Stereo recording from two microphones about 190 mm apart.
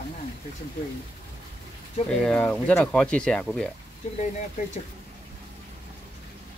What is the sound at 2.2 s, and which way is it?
Speech, 5° left (ahead or behind).